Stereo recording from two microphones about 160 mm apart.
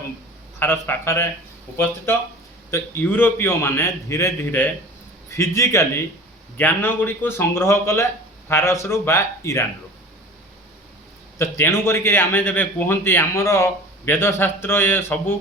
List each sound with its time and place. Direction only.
0.6 s a man's voice: 15° left (ahead or behind)
11.3 s a man's voice: 15° left (ahead or behind)